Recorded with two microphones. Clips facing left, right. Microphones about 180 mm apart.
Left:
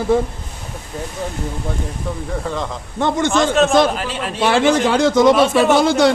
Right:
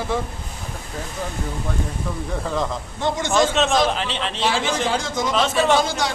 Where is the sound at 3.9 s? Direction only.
5° left (ahead or behind).